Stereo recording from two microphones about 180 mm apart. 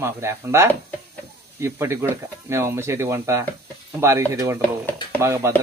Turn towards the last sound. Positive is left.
turn(degrees=-15)  # may be behind; listen again after turning